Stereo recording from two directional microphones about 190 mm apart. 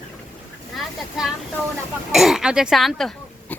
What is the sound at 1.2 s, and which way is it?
Speech, centre (ahead or behind).